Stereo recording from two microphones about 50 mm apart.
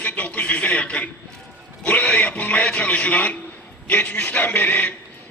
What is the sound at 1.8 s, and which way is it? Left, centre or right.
A man's voice, left.